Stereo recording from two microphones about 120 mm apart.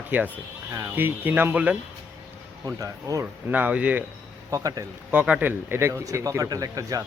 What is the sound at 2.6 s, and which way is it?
Speech, 30° right (ahead or behind).